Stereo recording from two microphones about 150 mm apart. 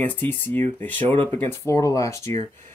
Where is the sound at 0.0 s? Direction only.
10° left (ahead or behind).